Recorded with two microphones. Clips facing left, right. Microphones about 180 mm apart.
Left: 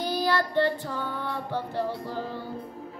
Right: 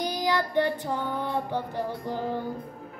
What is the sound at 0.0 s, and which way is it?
Child singing, 15° right (ahead or behind).